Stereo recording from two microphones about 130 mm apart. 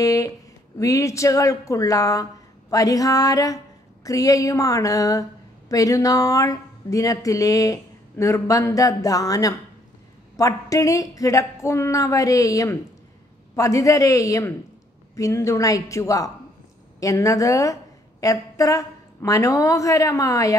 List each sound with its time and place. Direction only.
0.0 s speech: 25° left (ahead or behind)